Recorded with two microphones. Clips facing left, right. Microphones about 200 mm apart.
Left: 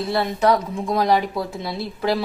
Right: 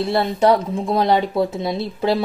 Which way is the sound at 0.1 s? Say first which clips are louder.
Right 2 dB; 30° right (ahead or behind).